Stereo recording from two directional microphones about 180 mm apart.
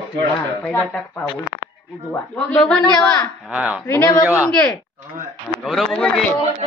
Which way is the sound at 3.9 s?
15° left (ahead or behind).